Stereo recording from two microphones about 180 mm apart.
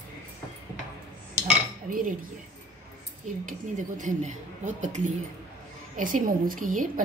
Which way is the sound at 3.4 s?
45° right (ahead or behind).